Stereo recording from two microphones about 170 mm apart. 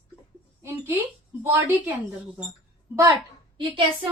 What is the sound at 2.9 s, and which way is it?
Speech, 15° right (ahead or behind).